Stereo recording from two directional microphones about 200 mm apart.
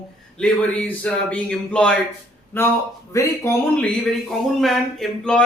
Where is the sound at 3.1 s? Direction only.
15° left (ahead or behind).